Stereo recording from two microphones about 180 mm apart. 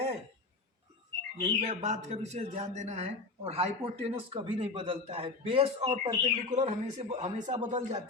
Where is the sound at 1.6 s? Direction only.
35° right (ahead or behind).